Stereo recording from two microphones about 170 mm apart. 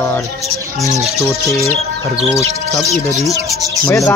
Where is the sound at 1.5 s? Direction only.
20° left (ahead or behind).